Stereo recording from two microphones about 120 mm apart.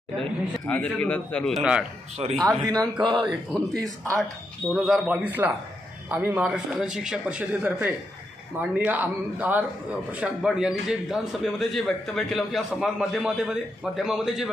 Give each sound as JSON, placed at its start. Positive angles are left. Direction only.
{"t": 0.2, "sound": "a man's voice", "side_deg": 10}
{"t": 1.6, "sound": "a man's voice", "side_deg": -10}
{"t": 2.2, "sound": "speech", "side_deg": -50}
{"t": 2.6, "sound": "speech", "side_deg": -35}
{"t": 3.7, "sound": "speech", "side_deg": -30}
{"t": 4.7, "sound": "a man's voice", "side_deg": 0}
{"t": 5.0, "sound": "a man's voice", "side_deg": -10}